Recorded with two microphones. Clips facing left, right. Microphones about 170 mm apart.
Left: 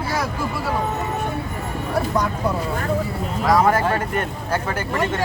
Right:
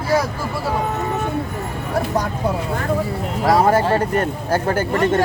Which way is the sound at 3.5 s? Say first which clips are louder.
Right 2 dB; 30° right (ahead or behind).